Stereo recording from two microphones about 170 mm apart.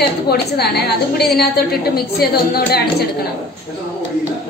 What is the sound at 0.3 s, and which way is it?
A woman's voice, 70° left (ahead or behind).